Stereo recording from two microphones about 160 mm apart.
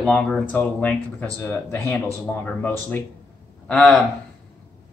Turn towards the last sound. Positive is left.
turn(degrees=5)  # may be behind; listen again after turning